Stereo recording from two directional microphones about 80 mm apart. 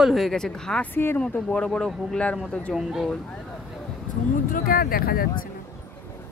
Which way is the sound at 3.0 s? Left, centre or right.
Centre.